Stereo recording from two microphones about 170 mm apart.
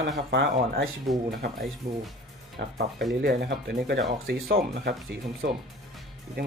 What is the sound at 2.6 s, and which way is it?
Speech, 90° right.